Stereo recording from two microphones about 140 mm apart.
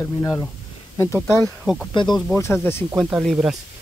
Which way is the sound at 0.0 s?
20° left (ahead or behind).